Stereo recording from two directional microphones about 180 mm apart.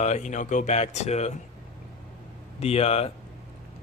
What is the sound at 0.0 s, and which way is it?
Speech, 40° left (ahead or behind).